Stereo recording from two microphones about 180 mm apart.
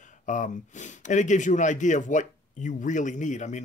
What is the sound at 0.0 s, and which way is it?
Speech, 45° left (ahead or behind).